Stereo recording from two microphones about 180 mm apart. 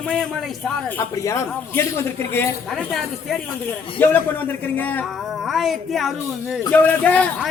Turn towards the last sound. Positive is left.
turn(degrees=10)  # may be behind; listen again after turning